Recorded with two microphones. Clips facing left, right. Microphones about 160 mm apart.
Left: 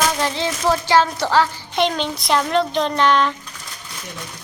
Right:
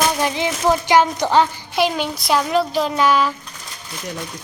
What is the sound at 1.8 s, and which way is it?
Child singing, 5° right (ahead or behind).